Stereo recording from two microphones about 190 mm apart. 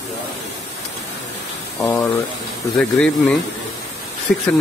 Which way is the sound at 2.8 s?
5° left (ahead or behind).